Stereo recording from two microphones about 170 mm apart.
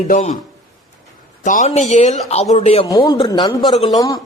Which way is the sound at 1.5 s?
45° left (ahead or behind).